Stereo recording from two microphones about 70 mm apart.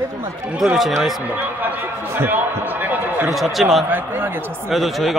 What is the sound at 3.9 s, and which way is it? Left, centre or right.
Speech, right.